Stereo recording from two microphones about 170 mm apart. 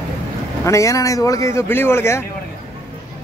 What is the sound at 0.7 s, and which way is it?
Speech, 20° left (ahead or behind).